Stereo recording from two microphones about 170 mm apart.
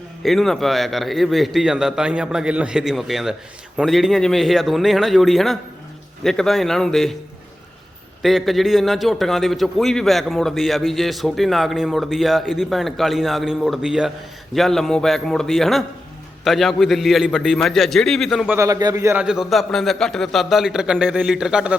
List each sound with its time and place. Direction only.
0.2 s a man's voice: centre (ahead or behind)
8.2 s a man's voice: centre (ahead or behind)
18.5 s speech: 20° right (ahead or behind)
19.2 s a man's voice: 5° right (ahead or behind)